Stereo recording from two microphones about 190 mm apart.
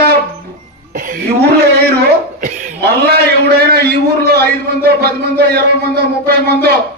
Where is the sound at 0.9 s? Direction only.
45° right (ahead or behind).